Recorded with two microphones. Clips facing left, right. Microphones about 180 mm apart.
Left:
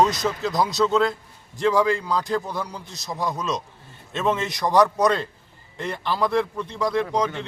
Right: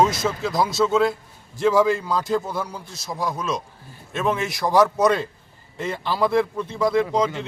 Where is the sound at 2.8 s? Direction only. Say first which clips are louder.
Right 1 dB; 20° left (ahead or behind).